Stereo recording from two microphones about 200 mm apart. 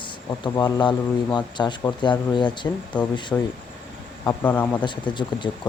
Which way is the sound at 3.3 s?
10° left (ahead or behind).